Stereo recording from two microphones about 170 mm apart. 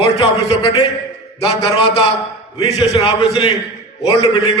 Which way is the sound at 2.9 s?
30° left (ahead or behind).